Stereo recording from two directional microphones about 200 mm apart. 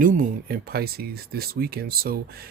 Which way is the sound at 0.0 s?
40° right (ahead or behind).